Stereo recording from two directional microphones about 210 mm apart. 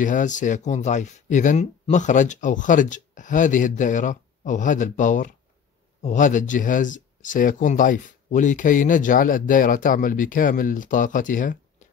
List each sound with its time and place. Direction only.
0.0 s speech: 35° left (ahead or behind)